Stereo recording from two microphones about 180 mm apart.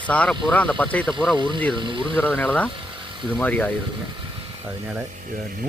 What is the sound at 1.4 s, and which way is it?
Speech, 25° right (ahead or behind).